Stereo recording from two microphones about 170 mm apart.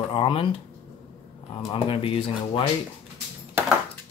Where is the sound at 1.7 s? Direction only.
35° left (ahead or behind).